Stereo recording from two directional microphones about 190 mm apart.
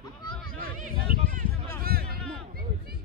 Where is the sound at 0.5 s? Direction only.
50° right (ahead or behind).